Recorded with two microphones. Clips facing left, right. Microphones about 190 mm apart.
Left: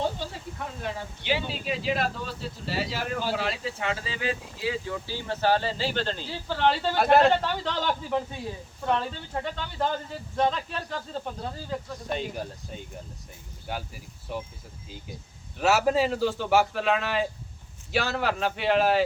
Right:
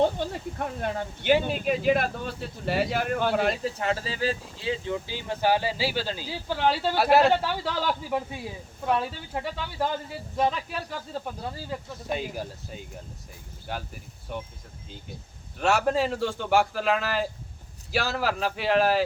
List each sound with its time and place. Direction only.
0.2 s a man's voice: 55° right (ahead or behind); by 14.4 s centre (ahead or behind)
15.5 s a man's voice: 5° left (ahead or behind)